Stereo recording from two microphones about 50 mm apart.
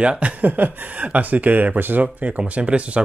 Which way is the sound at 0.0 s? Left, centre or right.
Right.